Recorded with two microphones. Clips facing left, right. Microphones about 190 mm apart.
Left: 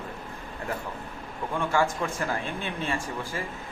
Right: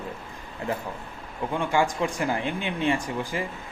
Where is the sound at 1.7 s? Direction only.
15° right (ahead or behind).